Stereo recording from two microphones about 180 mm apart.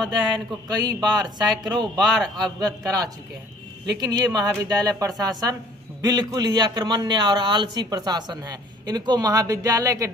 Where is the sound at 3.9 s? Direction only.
20° right (ahead or behind).